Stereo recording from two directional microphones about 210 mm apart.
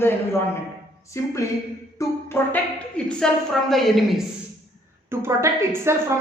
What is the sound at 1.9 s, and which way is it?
Music, 10° left (ahead or behind).